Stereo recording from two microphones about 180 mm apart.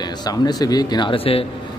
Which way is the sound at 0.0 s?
25° left (ahead or behind).